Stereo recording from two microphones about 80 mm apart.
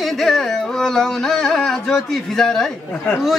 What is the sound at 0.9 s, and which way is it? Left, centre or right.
Speech, centre.